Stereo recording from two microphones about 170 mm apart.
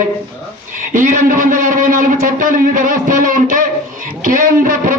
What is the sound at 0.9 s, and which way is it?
A man's voice, 50° right (ahead or behind).